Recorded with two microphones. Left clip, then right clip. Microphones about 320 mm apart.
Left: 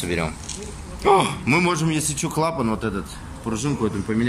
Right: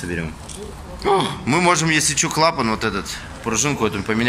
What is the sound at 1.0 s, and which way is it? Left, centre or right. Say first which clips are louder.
Speech: left 1 dB; centre.